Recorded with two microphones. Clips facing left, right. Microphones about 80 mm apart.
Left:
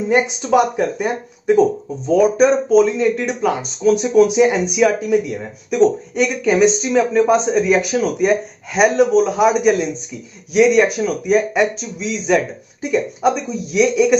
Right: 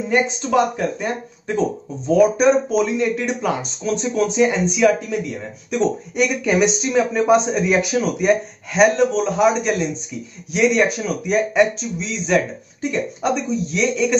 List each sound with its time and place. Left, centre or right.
0.1 s speech: centre
2.0 s speech: centre